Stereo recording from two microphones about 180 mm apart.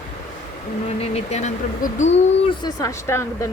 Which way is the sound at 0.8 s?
35° left (ahead or behind).